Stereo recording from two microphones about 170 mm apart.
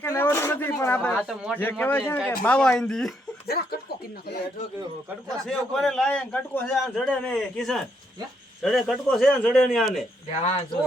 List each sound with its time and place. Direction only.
0.0 s a man's voice: 15° left (ahead or behind)
3.4 s speech: 65° left (ahead or behind)
5.5 s a man's voice: 5° left (ahead or behind)
10.3 s speech: 40° left (ahead or behind)